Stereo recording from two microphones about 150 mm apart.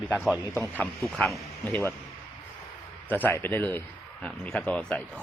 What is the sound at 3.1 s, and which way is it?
A man's voice, 10° left (ahead or behind).